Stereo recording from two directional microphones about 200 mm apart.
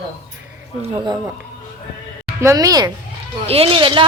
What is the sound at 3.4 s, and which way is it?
Speech, 30° right (ahead or behind).